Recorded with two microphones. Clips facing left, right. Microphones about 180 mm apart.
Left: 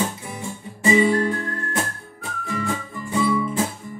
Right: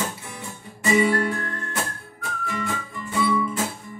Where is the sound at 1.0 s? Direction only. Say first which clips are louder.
Left 2 dB; 20° left (ahead or behind).